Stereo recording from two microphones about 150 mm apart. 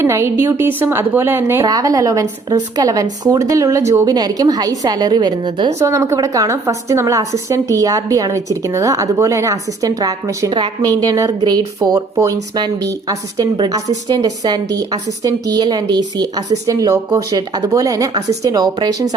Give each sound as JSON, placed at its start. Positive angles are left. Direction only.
{"t": 0.0, "sound": "a woman's voice", "side_deg": -15}